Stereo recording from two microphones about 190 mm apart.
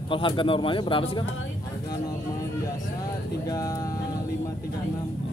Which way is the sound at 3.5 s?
20° left (ahead or behind).